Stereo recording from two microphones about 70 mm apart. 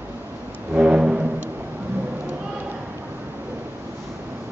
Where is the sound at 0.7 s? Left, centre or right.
Centre.